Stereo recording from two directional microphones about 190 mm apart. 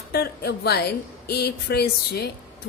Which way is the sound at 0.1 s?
55° left (ahead or behind).